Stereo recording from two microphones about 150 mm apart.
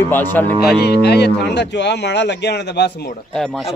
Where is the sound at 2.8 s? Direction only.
90° left.